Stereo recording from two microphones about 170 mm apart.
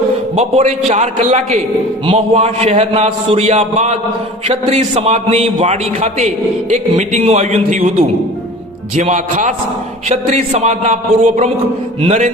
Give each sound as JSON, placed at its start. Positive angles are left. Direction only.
{"t": 0.3, "sound": "a man's voice", "side_deg": -40}